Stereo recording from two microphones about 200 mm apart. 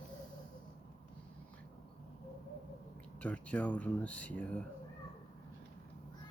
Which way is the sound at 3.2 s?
5° left (ahead or behind).